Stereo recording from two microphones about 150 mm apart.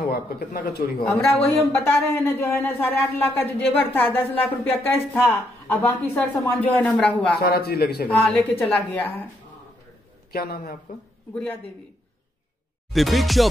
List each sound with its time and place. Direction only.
0.0 s speech: 80° left
1.0 s speech: 15° left (ahead or behind)
7.4 s a man's voice: 90° left
8.1 s speech: 10° left (ahead or behind)
10.3 s a man's voice: 90° left
11.3 s speech: 10° left (ahead or behind)
12.9 s music: centre (ahead or behind)